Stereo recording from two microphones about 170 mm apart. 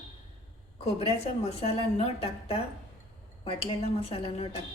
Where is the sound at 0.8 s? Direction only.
35° left (ahead or behind).